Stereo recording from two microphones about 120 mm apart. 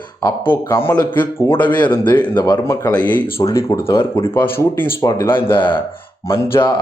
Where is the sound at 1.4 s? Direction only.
15° left (ahead or behind).